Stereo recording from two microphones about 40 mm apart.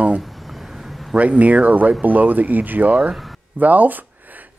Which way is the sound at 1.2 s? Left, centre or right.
Right.